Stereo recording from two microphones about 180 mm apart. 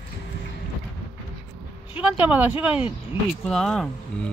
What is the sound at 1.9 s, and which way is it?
Speech, 10° right (ahead or behind).